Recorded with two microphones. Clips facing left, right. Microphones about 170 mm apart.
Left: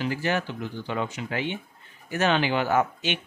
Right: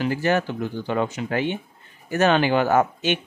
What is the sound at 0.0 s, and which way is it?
Speech, 50° right (ahead or behind).